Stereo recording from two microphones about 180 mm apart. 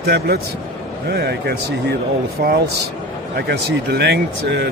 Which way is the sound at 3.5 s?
65° right (ahead or behind).